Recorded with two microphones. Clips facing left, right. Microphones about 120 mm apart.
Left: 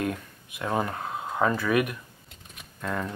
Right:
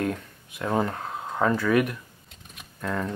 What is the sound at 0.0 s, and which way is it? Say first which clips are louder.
Speech: right 2 dB; 15° left (ahead or behind).